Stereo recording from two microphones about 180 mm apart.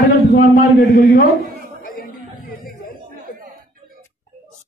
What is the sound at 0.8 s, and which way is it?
Speech, 60° left (ahead or behind).